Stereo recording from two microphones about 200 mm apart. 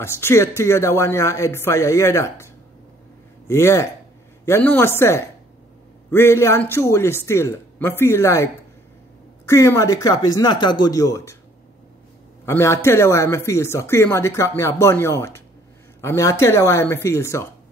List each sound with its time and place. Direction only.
0.0 s speech: 15° left (ahead or behind)
3.4 s speech: 15° left (ahead or behind)
9.5 s speech: 15° left (ahead or behind)
12.4 s speech: 15° left (ahead or behind)